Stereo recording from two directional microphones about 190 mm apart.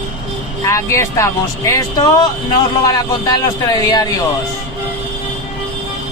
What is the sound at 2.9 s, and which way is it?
Speech, 20° left (ahead or behind).